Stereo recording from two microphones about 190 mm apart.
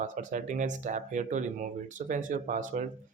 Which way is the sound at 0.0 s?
40° right (ahead or behind).